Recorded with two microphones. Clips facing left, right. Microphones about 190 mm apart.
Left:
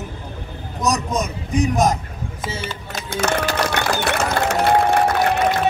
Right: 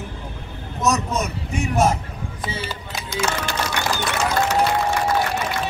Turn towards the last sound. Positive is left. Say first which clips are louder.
# left 4 dB
turn(degrees=60)  # may be behind; listen again after turning